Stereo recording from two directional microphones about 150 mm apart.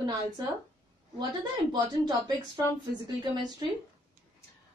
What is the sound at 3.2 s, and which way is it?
Speech, 30° right (ahead or behind).